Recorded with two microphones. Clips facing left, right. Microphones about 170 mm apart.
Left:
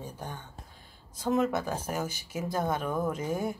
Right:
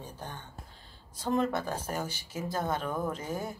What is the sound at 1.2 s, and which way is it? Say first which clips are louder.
Speech: left 2 dB; 5° left (ahead or behind).